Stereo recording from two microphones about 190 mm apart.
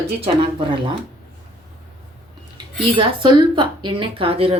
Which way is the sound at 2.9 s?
25° right (ahead or behind).